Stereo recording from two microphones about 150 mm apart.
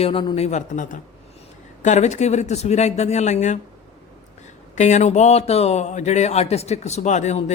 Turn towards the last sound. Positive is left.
turn(degrees=50)  # may be behind; listen again after turning